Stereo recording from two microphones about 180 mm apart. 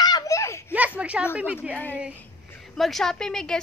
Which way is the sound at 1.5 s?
5° right (ahead or behind).